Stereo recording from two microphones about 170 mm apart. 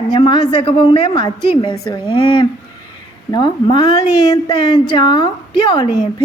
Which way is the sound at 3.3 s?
25° left (ahead or behind).